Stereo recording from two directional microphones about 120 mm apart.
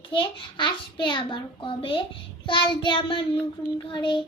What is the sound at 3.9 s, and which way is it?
Child singing, 40° left (ahead or behind).